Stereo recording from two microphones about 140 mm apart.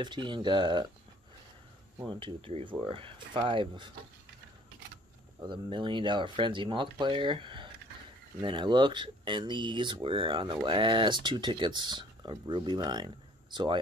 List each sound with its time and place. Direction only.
0.0 s speech: 35° right (ahead or behind)
2.0 s speech: 35° right (ahead or behind)
5.4 s speech: 35° right (ahead or behind)